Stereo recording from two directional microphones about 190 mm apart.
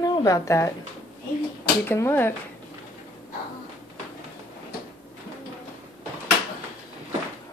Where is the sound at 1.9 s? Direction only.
10° left (ahead or behind).